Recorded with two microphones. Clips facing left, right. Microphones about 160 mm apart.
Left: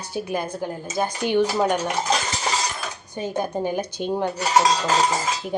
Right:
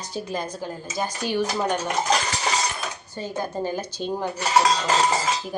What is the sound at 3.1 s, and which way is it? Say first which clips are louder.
Speech: left 4 dB; 20° left (ahead or behind).